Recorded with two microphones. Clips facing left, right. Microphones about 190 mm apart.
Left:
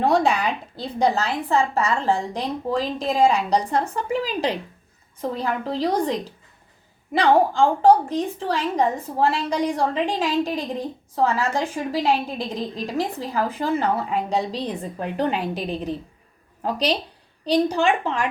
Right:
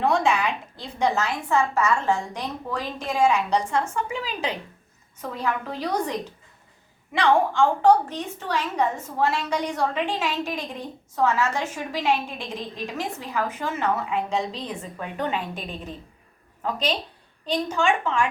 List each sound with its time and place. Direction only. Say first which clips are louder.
0.0 s a woman's voice: left 2 dB; 35° left (ahead or behind)
17.4 s a woman's voice: left 4 dB; 35° left (ahead or behind)